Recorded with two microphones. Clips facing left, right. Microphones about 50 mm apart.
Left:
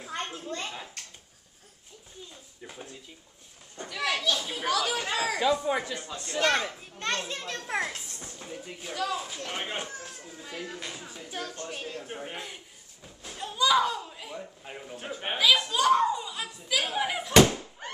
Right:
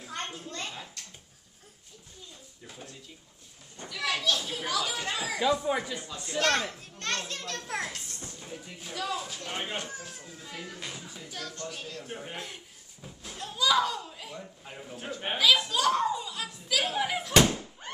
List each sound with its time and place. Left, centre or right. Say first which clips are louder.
0.1 s a child's voice: left 3 dB; centre
2.6 s speech: left 3 dB; left
4.1 s a child's voice: even; centre
4.6 s speech: left 4 dB; left
5.5 s a child's voice: left 1 dB; centre
10.6 s music: left 2 dB; centre
11.2 s speech: left 3 dB; left
12.0 s a child's voice: left 1 dB; centre